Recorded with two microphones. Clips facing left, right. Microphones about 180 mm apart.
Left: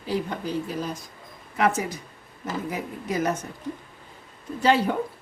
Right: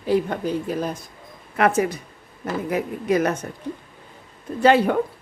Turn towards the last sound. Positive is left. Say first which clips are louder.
# right 5 dB
turn(degrees=-55)  # may be behind; listen again after turning